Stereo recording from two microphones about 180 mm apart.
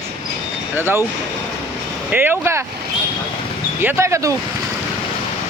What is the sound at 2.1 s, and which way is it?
Speech, 10° right (ahead or behind).